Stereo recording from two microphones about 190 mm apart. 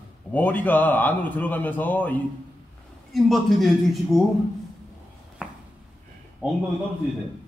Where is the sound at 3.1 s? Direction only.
Centre (ahead or behind).